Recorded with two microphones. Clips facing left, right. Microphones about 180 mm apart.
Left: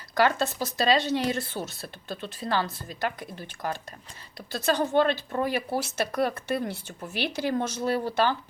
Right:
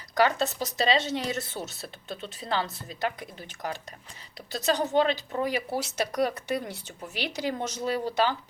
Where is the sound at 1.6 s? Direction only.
Centre (ahead or behind).